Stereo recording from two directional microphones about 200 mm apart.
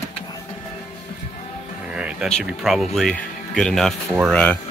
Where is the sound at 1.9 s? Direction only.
5° right (ahead or behind).